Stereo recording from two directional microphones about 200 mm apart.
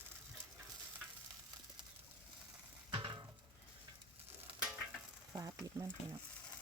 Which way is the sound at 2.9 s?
25° right (ahead or behind).